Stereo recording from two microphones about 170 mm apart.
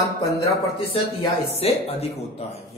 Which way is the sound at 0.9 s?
35° left (ahead or behind).